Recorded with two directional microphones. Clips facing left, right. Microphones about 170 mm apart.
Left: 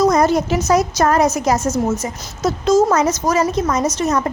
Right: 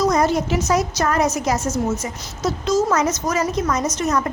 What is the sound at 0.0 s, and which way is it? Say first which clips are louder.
A woman's voice: left 4 dB; 45° left (ahead or behind).